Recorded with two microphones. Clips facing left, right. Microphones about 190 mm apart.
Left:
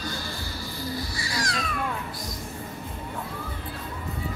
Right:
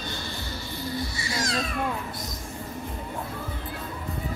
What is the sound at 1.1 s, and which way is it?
Babbling, 25° right (ahead or behind).